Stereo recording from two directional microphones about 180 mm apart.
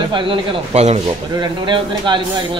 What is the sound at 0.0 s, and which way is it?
Speech, 25° right (ahead or behind).